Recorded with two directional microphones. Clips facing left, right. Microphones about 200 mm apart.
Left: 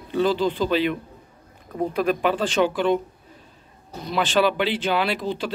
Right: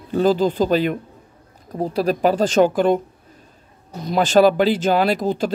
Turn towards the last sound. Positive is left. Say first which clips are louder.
# right 6 dB
turn(degrees=-45)  # may be behind; listen again after turning